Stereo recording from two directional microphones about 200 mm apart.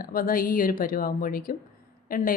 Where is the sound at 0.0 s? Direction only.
45° left (ahead or behind).